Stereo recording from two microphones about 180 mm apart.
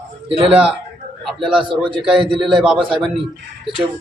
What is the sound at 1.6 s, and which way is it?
Speech, 30° right (ahead or behind).